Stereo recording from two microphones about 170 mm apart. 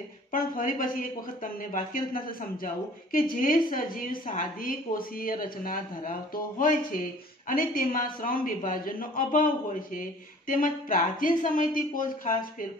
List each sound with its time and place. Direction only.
0.3 s a woman's voice: 55° left (ahead or behind)
10.5 s speech: 50° left (ahead or behind)